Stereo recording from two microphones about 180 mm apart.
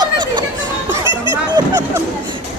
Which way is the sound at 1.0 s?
25° left (ahead or behind).